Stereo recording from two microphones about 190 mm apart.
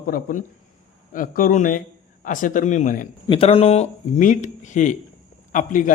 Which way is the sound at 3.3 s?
30° left (ahead or behind).